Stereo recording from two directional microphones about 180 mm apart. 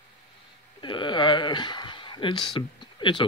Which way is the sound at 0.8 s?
25° left (ahead or behind).